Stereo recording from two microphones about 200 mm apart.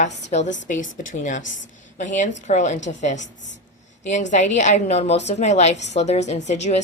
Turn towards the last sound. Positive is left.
turn(degrees=35)  # may be behind; listen again after turning